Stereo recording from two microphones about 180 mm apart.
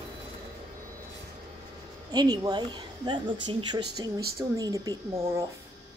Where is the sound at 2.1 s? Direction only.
20° right (ahead or behind).